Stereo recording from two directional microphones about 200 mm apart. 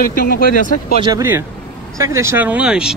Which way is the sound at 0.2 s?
45° left (ahead or behind).